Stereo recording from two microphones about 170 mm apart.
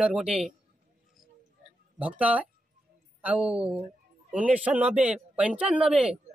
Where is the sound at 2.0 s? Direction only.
10° right (ahead or behind).